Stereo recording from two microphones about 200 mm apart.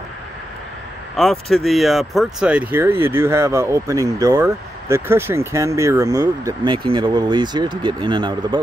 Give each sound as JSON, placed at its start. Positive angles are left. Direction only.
{"t": 1.1, "sound": "speech", "side_deg": 0}